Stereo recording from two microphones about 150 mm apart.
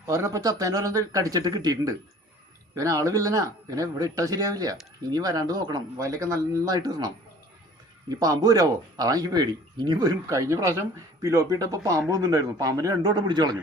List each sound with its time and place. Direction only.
0.0 s speech: 20° right (ahead or behind)
8.1 s speech: 25° right (ahead or behind)